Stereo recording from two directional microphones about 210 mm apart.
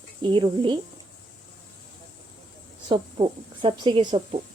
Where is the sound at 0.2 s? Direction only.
20° right (ahead or behind).